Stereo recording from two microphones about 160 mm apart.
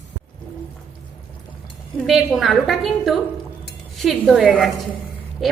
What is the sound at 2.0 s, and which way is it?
A woman's voice, centre (ahead or behind).